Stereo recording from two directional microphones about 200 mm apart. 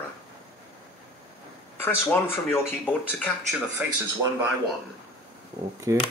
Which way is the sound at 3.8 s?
10° right (ahead or behind).